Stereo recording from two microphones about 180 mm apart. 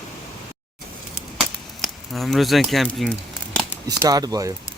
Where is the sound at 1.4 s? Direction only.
Centre (ahead or behind).